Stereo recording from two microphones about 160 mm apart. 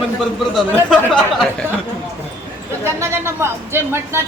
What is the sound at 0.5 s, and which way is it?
Speech, 5° left (ahead or behind).